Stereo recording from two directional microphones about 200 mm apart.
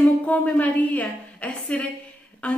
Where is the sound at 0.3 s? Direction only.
5° left (ahead or behind).